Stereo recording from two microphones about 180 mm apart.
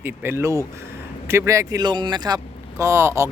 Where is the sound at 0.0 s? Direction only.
10° right (ahead or behind).